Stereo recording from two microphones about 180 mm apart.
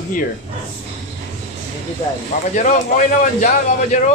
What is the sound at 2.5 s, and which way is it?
A man's voice, 45° left (ahead or behind).